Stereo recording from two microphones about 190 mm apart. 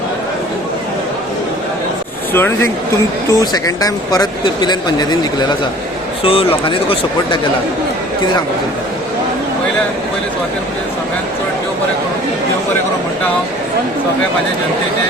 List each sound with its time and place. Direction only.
2.3 s speech: 10° left (ahead or behind); by 7.3 s 30° left (ahead or behind)